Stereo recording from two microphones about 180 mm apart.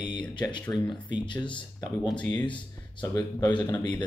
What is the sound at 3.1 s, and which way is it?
Speech, 25° left (ahead or behind).